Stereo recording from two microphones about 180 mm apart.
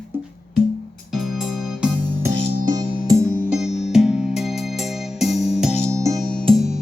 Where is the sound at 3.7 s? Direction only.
35° left (ahead or behind).